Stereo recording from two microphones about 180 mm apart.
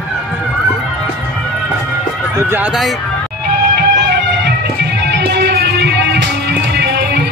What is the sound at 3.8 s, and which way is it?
Music, 65° right (ahead or behind).